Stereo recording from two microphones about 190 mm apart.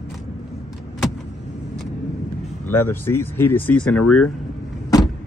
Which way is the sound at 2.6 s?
10° left (ahead or behind).